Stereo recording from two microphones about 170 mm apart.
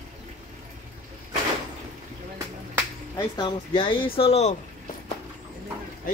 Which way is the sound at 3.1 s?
25° left (ahead or behind).